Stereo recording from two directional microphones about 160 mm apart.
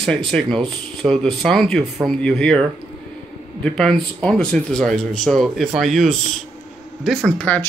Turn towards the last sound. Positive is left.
turn(degrees=10)  # may be behind; listen again after turning